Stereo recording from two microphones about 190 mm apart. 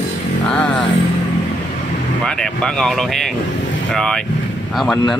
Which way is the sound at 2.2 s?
5° left (ahead or behind).